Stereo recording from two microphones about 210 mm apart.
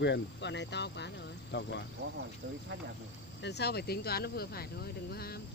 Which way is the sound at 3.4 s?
55° left (ahead or behind).